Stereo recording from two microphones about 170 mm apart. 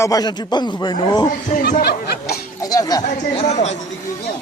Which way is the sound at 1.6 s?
65° left (ahead or behind).